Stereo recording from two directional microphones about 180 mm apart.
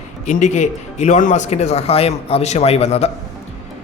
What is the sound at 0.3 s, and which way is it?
A man's voice, 40° left (ahead or behind).